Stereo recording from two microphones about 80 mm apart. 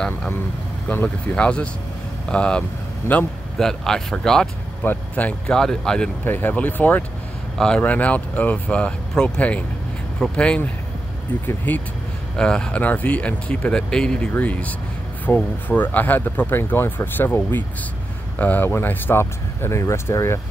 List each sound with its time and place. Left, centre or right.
1.0 s speech: centre
3.0 s a man's voice: left
3.5 s speech: centre
5.6 s speech: centre
6.2 s speech: left
7.5 s speech: centre
12.4 s speech: centre; by 20.3 s left